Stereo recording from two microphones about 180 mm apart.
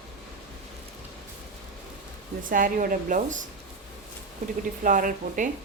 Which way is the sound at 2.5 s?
50° right (ahead or behind).